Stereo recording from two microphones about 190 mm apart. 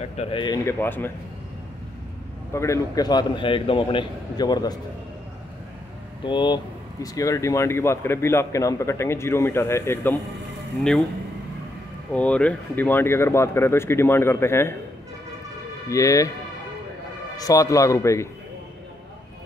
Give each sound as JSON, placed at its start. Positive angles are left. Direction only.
{"t": 0.2, "sound": "a man's voice", "side_deg": 25}
{"t": 0.7, "sound": "speech", "side_deg": 10}
{"t": 2.5, "sound": "a man's voice", "side_deg": 15}
{"t": 6.2, "sound": "speech", "side_deg": 25}
{"t": 12.1, "sound": "speech", "side_deg": 5}
{"t": 15.9, "sound": "speech", "side_deg": 15}
{"t": 17.4, "sound": "speech", "side_deg": 20}